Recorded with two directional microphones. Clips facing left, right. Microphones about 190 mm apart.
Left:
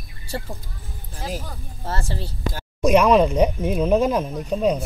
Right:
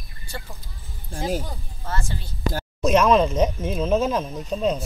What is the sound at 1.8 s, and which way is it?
Speech, 35° left (ahead or behind).